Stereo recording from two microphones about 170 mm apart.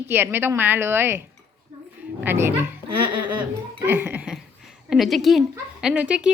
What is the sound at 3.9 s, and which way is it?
A woman's voice, 10° right (ahead or behind).